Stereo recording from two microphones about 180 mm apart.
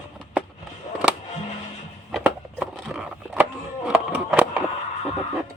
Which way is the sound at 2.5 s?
5° right (ahead or behind).